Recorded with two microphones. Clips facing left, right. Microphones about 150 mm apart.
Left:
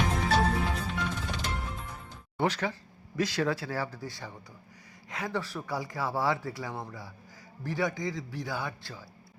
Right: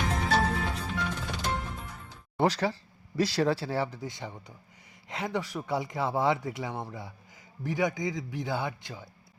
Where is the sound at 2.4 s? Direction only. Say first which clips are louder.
Right 3 dB; 35° right (ahead or behind).